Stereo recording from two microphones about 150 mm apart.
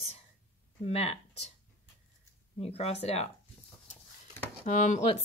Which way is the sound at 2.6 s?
45° left (ahead or behind).